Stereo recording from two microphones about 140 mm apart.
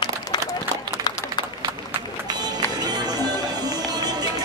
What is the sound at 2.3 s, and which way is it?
Music, 30° right (ahead or behind).